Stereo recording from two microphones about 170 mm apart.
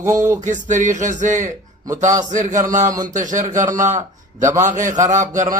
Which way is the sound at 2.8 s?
20° right (ahead or behind).